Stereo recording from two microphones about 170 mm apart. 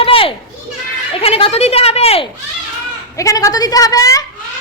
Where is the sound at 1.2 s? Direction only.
35° left (ahead or behind).